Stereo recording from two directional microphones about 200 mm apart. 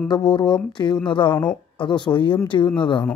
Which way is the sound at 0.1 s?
25° left (ahead or behind).